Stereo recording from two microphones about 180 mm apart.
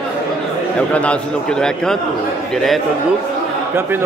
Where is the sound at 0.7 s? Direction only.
5° left (ahead or behind).